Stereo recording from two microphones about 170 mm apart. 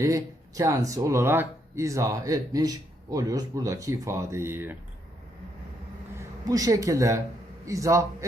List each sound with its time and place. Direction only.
0.0 s speech: 20° right (ahead or behind)
6.1 s a man's voice: 20° right (ahead or behind)